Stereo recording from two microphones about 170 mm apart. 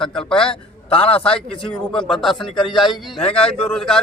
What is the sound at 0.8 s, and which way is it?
Speech, 30° left (ahead or behind).